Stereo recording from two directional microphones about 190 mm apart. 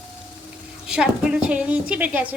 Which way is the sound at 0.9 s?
5° right (ahead or behind).